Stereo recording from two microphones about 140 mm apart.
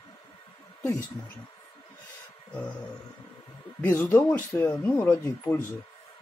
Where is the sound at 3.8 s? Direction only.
15° left (ahead or behind).